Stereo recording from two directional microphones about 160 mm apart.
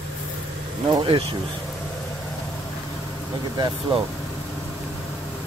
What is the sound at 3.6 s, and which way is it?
Speech, 30° right (ahead or behind).